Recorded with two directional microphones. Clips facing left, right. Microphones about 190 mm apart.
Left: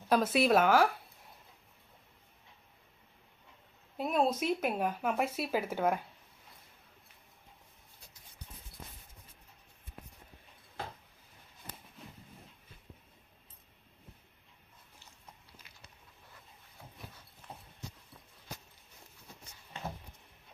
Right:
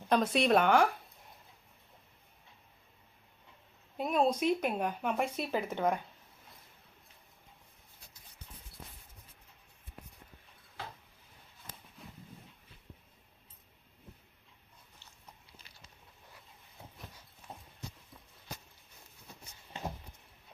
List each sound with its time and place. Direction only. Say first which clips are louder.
0.1 s speech: even; 5° left (ahead or behind)
3.9 s speech: right 1 dB; centre (ahead or behind)